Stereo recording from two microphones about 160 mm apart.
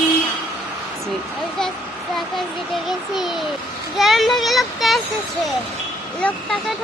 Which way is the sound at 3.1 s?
Centre (ahead or behind).